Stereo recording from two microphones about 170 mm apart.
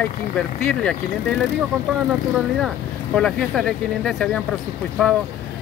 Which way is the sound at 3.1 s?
5° left (ahead or behind).